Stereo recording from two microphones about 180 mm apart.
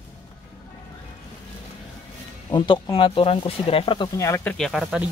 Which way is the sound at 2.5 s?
25° left (ahead or behind).